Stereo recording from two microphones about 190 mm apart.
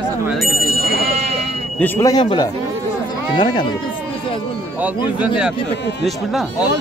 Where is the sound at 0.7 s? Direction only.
55° right (ahead or behind).